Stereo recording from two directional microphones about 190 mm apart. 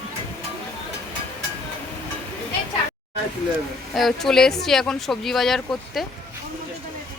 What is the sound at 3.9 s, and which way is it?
Speech, centre (ahead or behind).